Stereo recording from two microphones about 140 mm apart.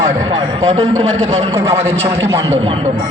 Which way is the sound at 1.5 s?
20° right (ahead or behind).